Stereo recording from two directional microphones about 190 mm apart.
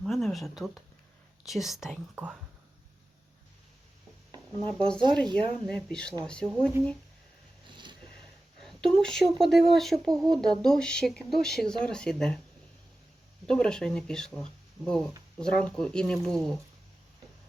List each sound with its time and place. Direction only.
0.0 s speech: centre (ahead or behind)
4.3 s a sound: 25° right (ahead or behind)
5.1 s speech: 5° left (ahead or behind)
8.6 s speech: 5° left (ahead or behind)
13.5 s speech: 5° left (ahead or behind)